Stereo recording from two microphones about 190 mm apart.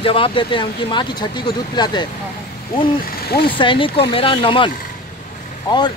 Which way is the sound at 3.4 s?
25° left (ahead or behind).